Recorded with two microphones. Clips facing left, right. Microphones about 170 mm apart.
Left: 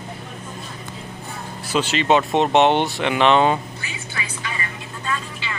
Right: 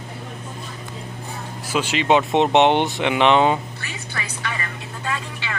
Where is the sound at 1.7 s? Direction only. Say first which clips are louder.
Even; 10° right (ahead or behind).